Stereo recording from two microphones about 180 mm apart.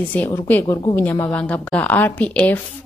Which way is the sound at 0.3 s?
15° left (ahead or behind).